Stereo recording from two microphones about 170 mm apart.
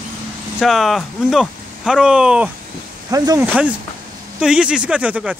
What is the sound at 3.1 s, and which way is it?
Speech, 20° right (ahead or behind).